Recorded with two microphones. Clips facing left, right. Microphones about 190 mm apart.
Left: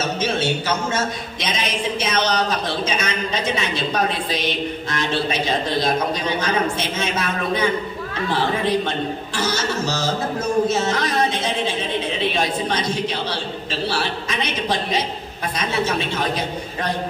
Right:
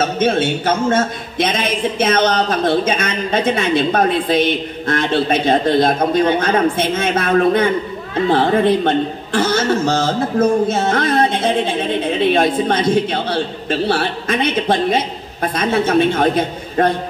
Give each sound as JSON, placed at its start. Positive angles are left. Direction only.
{"t": 0.0, "sound": "a man's voice", "side_deg": -55}